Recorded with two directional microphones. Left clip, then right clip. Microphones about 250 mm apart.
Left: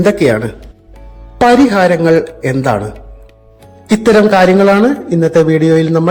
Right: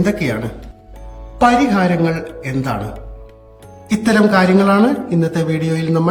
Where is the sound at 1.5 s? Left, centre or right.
Centre.